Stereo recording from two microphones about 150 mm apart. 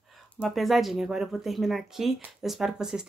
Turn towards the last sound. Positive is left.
turn(degrees=-5)  # may be behind; listen again after turning